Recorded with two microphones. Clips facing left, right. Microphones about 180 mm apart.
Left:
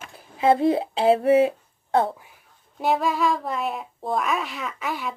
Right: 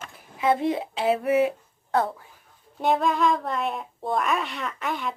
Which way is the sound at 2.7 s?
Centre (ahead or behind).